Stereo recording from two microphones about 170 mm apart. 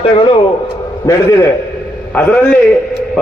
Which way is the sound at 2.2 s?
10° left (ahead or behind).